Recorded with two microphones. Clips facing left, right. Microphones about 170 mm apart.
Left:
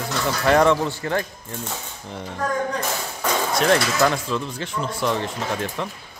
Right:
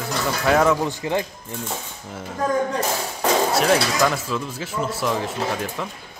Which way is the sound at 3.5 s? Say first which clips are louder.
Even; 5° right (ahead or behind).